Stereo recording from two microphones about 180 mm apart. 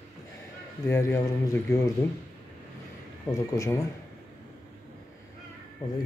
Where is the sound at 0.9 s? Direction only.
10° left (ahead or behind).